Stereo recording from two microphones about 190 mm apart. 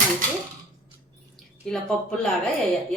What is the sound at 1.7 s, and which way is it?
Speech, centre (ahead or behind).